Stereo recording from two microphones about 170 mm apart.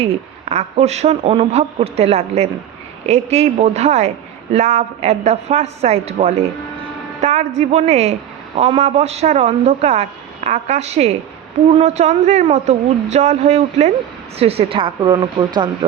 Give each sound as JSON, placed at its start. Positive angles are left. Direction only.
{"t": 0.0, "sound": "speech", "side_deg": -40}